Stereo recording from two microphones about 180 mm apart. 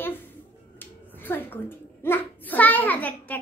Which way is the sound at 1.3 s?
10° left (ahead or behind).